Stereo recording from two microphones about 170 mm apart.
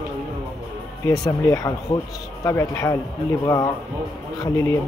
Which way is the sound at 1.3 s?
20° left (ahead or behind).